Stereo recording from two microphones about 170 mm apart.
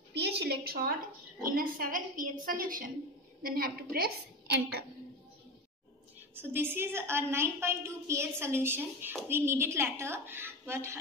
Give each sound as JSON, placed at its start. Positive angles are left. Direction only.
{"t": 0.1, "sound": "a sound", "side_deg": -80}
{"t": 1.4, "sound": "a woman's voice", "side_deg": -55}
{"t": 6.3, "sound": "a woman's voice", "side_deg": -10}